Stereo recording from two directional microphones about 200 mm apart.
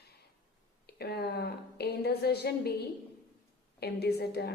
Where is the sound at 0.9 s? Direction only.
50° left (ahead or behind).